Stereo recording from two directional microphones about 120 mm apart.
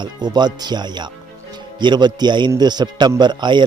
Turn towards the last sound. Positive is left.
turn(degrees=-40)  # may be behind; listen again after turning